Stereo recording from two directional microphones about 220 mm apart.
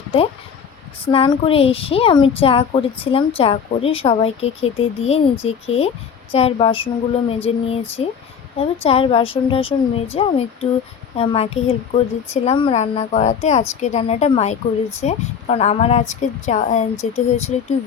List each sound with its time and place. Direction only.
0.1 s a woman's voice: 25° left (ahead or behind)